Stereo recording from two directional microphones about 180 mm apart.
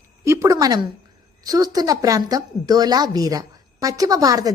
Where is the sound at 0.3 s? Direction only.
15° right (ahead or behind).